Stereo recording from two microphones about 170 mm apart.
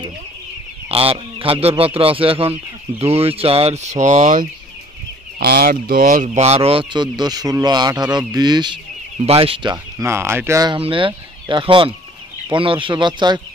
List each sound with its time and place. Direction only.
0.8 s speech: 35° right (ahead or behind)
5.5 s speech: 60° right (ahead or behind)
6.2 s speech: 40° right (ahead or behind); by 10.7 s 15° right (ahead or behind)
10.7 s speech: 30° right (ahead or behind)